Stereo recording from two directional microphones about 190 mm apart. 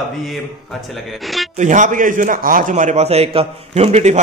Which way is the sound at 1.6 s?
40° right (ahead or behind).